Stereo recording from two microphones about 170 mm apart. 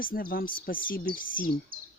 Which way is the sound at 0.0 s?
55° left (ahead or behind).